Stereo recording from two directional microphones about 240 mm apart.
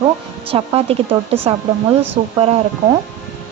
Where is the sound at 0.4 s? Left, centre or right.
Right.